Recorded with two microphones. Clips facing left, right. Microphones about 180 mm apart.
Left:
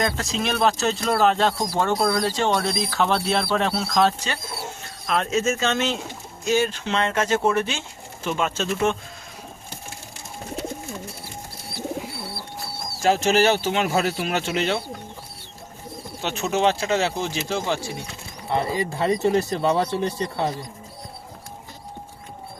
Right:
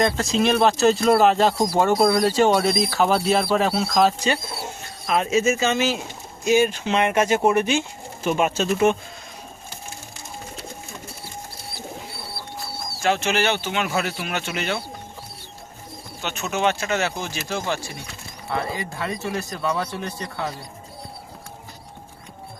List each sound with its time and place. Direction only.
0.0 s speech: centre (ahead or behind)
13.0 s speech: 35° left (ahead or behind)
16.2 s speech: 30° left (ahead or behind)
18.5 s speech: 30° left (ahead or behind)